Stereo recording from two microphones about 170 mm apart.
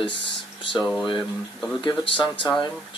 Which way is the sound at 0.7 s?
Centre (ahead or behind).